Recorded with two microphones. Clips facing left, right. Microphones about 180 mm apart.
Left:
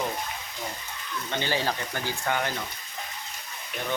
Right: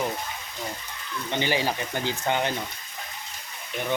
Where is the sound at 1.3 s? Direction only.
15° right (ahead or behind).